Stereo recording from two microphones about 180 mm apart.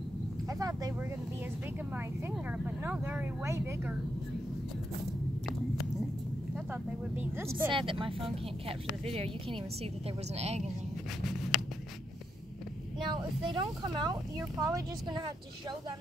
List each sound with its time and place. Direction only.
0.5 s speech: 20° right (ahead or behind)
2.0 s speech: 10° right (ahead or behind)
6.7 s speech: 10° right (ahead or behind)
7.7 s speech: 30° right (ahead or behind)
11.2 s writing: centre (ahead or behind)
13.1 s speech: 25° right (ahead or behind)